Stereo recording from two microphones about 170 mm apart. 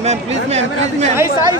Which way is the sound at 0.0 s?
40° right (ahead or behind).